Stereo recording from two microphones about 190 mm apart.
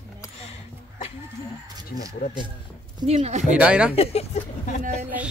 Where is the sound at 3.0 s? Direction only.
35° right (ahead or behind).